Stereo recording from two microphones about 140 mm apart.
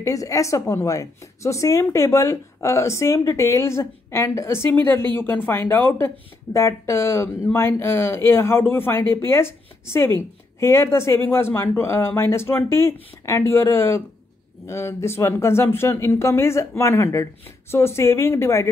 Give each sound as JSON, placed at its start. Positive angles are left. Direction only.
{"t": 0.0, "sound": "a woman's voice", "side_deg": 25}